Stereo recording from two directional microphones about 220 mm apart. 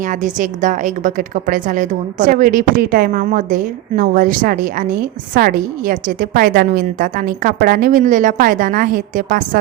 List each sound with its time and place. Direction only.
0.0 s a woman's voice: 35° right (ahead or behind)